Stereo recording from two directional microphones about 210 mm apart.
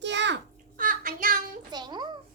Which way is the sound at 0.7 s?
40° right (ahead or behind).